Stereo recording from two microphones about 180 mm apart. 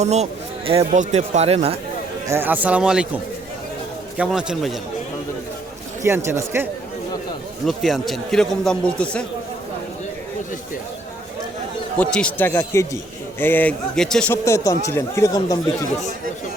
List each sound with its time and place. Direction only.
0.0 s speech: 40° right (ahead or behind)
2.2 s speech: 15° right (ahead or behind)
4.2 s a man's voice: 5° right (ahead or behind)
6.0 s speech: 15° right (ahead or behind)
7.6 s a man's voice: centre (ahead or behind)
11.9 s a man's voice: 5° left (ahead or behind)
14.4 s a man's voice: 15° left (ahead or behind)